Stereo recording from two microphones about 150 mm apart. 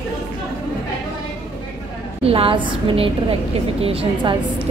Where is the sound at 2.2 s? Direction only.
40° right (ahead or behind).